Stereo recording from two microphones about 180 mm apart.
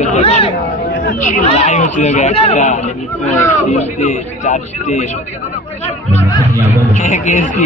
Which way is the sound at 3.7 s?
40° left (ahead or behind).